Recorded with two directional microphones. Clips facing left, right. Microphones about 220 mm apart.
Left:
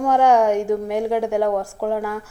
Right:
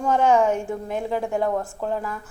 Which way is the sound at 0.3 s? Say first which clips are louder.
Left 4 dB; 75° left (ahead or behind).